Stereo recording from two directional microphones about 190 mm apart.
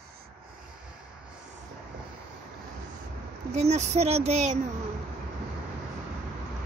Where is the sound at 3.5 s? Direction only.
35° right (ahead or behind).